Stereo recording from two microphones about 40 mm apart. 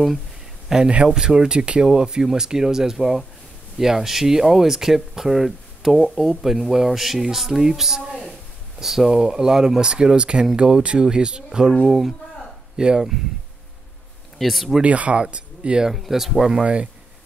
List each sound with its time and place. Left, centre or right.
0.7 s speech: centre
11.8 s speech: centre
12.7 s speech: centre
14.4 s speech: centre
14.8 s speech: right
15.9 s speech: centre
16.6 s speech: right